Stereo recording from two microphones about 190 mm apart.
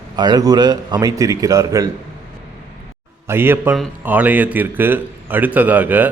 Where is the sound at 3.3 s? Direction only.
10° right (ahead or behind).